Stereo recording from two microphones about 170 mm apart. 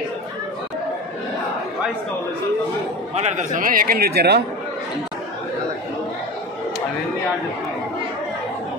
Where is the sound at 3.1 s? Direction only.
45° right (ahead or behind); by 4.4 s 75° right (ahead or behind).